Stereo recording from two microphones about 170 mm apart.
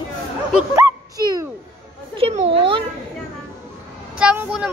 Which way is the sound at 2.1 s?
35° right (ahead or behind).